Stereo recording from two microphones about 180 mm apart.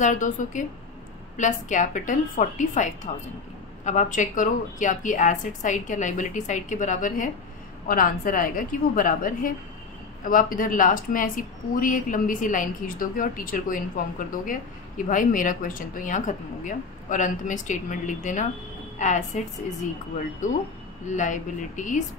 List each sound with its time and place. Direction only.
0.0 s a woman's voice: 45° left (ahead or behind)
21.1 s speech: 45° left (ahead or behind)